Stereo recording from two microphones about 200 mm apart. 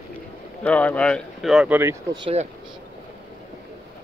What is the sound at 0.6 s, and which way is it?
Speech, 5° left (ahead or behind).